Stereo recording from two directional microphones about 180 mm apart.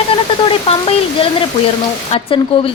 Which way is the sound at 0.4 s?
30° left (ahead or behind).